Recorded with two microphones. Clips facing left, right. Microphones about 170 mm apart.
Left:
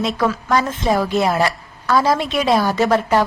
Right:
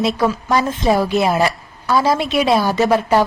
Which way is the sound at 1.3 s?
15° right (ahead or behind).